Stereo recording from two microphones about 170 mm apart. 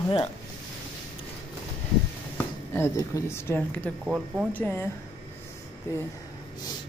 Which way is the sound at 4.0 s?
5° right (ahead or behind).